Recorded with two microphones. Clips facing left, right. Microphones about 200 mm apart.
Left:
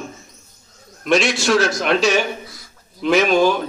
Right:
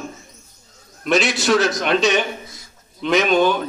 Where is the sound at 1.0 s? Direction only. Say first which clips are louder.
Left 1 dB; centre (ahead or behind).